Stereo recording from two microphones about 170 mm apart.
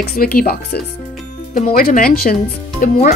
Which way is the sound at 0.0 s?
60° left (ahead or behind).